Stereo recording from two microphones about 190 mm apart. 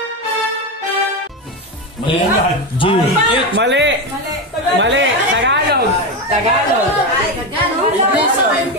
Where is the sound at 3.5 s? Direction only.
70° right (ahead or behind).